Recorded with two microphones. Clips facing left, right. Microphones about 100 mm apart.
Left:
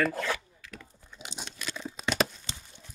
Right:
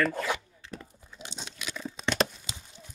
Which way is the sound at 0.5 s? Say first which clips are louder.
Right 4 dB; 30° right (ahead or behind).